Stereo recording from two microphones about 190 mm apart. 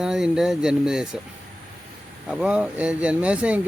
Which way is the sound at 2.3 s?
5° right (ahead or behind).